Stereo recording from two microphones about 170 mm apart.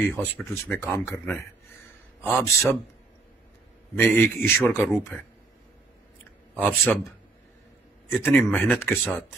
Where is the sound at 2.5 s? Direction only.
15° left (ahead or behind).